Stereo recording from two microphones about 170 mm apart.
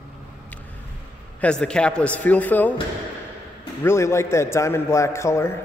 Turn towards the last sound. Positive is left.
turn(degrees=15)  # may be behind; listen again after turning